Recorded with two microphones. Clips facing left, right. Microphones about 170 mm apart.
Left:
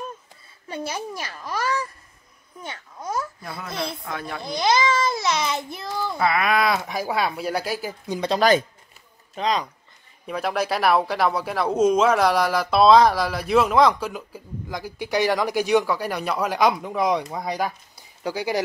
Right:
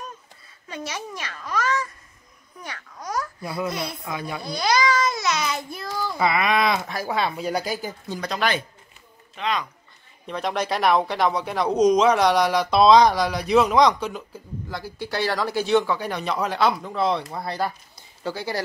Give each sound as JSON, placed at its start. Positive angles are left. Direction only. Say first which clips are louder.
{"t": 2.6, "sound": "speech", "louder": "left 2 dB", "side_deg": 25}
{"t": 3.4, "sound": "speech", "louder": "right 7 dB", "side_deg": 0}
{"t": 3.7, "sound": "speech", "louder": "left 1 dB", "side_deg": 25}
{"t": 4.0, "sound": "speech", "louder": "right 1 dB", "side_deg": -10}
{"t": 4.4, "sound": "babbling", "louder": "left 2 dB", "side_deg": 20}
{"t": 6.1, "sound": "speech", "louder": "even", "side_deg": 0}
{"t": 8.1, "sound": "speech", "louder": "left 6 dB", "side_deg": 25}
{"t": 8.4, "sound": "speech", "louder": "left 7 dB", "side_deg": 40}
{"t": 10.2, "sound": "speech", "louder": "left 1 dB", "side_deg": 5}